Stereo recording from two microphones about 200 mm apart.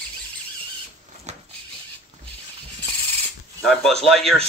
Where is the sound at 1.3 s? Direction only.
35° right (ahead or behind).